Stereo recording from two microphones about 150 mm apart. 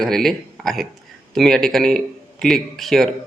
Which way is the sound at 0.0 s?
5° left (ahead or behind).